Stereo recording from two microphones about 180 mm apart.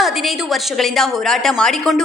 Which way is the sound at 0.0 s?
Centre (ahead or behind).